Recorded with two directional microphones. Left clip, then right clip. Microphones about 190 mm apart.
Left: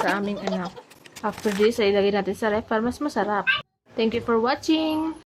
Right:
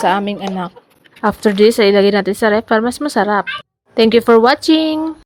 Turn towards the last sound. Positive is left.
turn(degrees=-40)  # may be behind; listen again after turning